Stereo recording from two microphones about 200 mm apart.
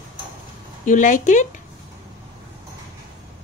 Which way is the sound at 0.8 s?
40° left (ahead or behind).